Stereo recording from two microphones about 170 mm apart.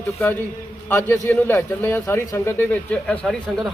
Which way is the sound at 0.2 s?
10° left (ahead or behind).